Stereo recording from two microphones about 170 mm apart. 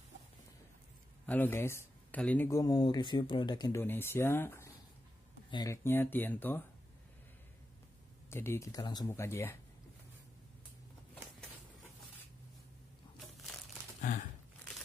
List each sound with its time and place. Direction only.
1.2 s speech: 10° left (ahead or behind)
3.8 s speech: 15° left (ahead or behind)
8.3 s speech: 15° left (ahead or behind)
14.1 s a sound: 50° left (ahead or behind)